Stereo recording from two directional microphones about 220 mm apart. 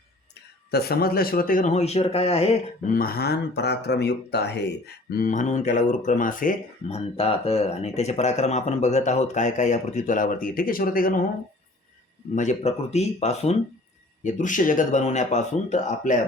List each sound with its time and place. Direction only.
0.7 s speech: 45° left (ahead or behind); by 2.9 s 30° left (ahead or behind)
2.9 s speech: 45° left (ahead or behind)
12.3 s speech: 35° left (ahead or behind)